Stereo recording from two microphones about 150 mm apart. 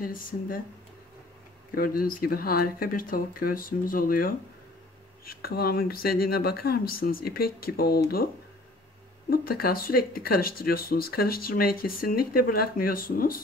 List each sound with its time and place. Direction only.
0.0 s speech: 70° left (ahead or behind)
1.8 s speech: 70° left (ahead or behind)
5.4 s speech: 90° left
9.3 s speech: 80° left